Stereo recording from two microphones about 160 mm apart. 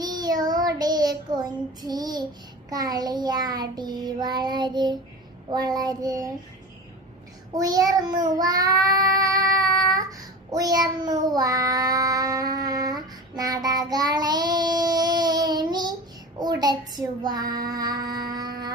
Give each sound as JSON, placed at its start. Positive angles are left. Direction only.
{"t": 0.0, "sound": "child singing", "side_deg": -25}
{"t": 7.5, "sound": "child singing", "side_deg": -25}
{"t": 17.7, "sound": "music", "side_deg": -25}